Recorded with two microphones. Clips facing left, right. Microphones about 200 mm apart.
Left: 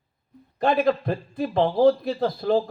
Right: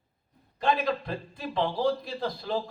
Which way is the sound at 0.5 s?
55° left (ahead or behind).